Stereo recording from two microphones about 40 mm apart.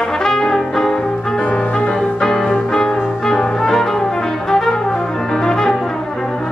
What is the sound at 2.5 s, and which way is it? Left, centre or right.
Brass instrument, centre.